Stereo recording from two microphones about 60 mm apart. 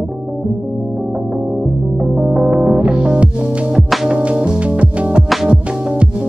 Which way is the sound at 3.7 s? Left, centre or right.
Centre.